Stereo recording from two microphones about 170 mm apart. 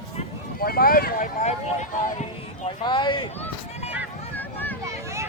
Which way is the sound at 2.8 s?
30° left (ahead or behind).